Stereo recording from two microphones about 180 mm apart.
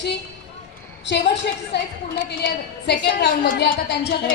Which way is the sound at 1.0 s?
70° left (ahead or behind).